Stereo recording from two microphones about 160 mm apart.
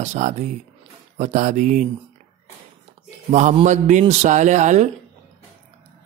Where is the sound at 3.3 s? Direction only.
50° right (ahead or behind).